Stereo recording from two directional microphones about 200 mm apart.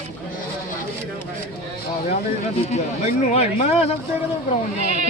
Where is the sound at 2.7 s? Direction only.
35° left (ahead or behind).